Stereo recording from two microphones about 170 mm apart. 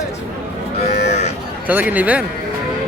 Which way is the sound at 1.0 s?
40° left (ahead or behind).